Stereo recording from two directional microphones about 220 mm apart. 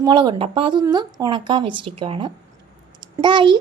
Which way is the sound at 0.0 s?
20° right (ahead or behind).